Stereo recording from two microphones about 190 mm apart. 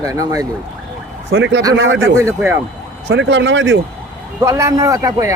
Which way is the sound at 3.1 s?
70° right (ahead or behind).